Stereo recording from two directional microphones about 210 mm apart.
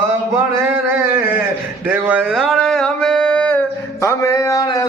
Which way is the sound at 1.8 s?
5° right (ahead or behind).